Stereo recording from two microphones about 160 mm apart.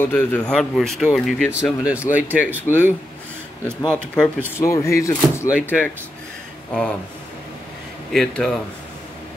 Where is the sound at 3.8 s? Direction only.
5° left (ahead or behind).